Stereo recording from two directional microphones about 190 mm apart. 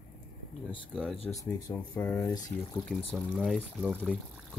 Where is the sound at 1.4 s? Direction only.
15° left (ahead or behind).